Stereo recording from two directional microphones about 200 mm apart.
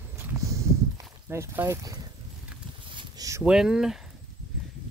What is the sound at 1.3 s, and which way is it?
Speech, 15° right (ahead or behind).